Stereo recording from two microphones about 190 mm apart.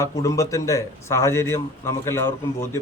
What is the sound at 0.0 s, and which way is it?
A man's voice, 15° left (ahead or behind).